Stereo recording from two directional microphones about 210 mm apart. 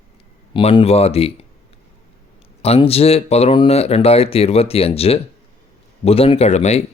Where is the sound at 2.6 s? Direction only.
30° left (ahead or behind).